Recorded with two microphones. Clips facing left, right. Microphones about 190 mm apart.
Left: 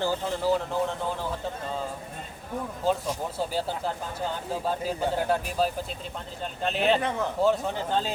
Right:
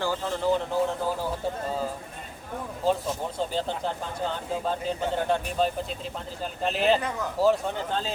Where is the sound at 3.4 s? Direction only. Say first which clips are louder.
Right 1 dB; 10° left (ahead or behind).